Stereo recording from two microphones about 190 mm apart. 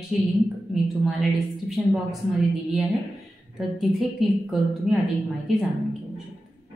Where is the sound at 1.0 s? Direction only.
Centre (ahead or behind).